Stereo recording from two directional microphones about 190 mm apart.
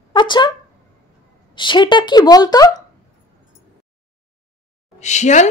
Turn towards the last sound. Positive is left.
turn(degrees=40)  # may be behind; listen again after turning